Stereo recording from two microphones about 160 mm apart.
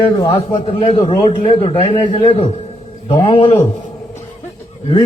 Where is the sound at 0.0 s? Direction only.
35° left (ahead or behind).